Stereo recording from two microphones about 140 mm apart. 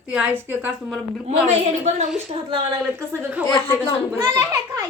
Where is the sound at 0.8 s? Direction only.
5° left (ahead or behind).